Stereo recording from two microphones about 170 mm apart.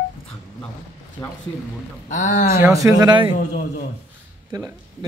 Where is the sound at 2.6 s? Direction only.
20° right (ahead or behind).